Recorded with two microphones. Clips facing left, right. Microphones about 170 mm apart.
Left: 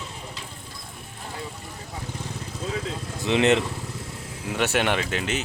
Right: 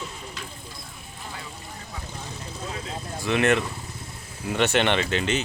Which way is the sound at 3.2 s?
20° left (ahead or behind).